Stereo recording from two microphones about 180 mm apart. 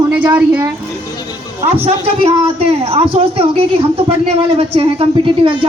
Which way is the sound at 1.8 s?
35° right (ahead or behind).